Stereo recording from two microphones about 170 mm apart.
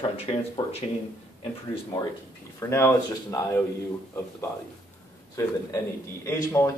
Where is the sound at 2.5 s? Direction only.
15° left (ahead or behind).